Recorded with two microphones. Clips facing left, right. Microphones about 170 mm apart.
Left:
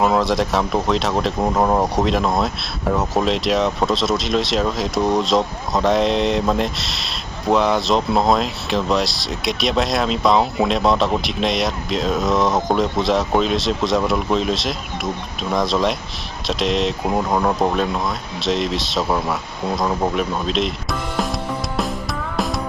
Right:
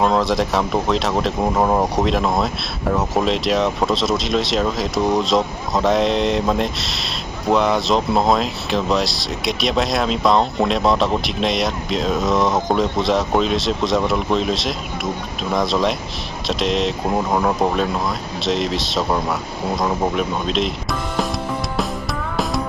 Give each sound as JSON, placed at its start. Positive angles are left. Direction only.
{"t": 0.0, "sound": "speech", "side_deg": 0}